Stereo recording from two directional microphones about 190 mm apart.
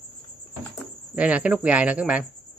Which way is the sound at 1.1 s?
5° right (ahead or behind).